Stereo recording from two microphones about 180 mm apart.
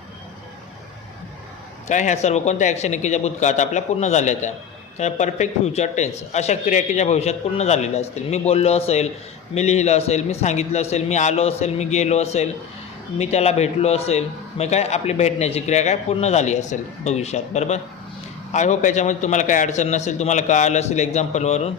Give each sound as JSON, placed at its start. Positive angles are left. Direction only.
{"t": 1.9, "sound": "a man's voice", "side_deg": 40}